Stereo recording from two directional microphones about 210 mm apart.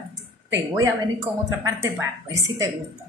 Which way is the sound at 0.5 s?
15° right (ahead or behind).